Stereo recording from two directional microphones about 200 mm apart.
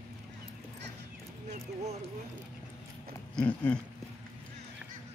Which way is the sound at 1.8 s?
35° right (ahead or behind).